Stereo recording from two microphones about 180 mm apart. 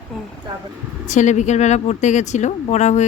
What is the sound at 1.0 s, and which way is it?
Speech, 40° left (ahead or behind).